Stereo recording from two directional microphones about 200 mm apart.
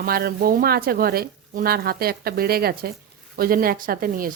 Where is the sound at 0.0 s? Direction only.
50° right (ahead or behind).